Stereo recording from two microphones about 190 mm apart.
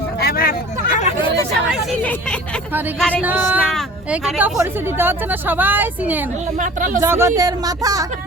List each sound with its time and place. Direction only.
0.2 s hubbub: 55° left (ahead or behind)
2.0 s speech: 10° left (ahead or behind)
3.2 s speech: 10° right (ahead or behind)
3.6 s speech: centre (ahead or behind)
6.6 s speech: 45° right (ahead or behind)
7.0 s speech: 15° right (ahead or behind)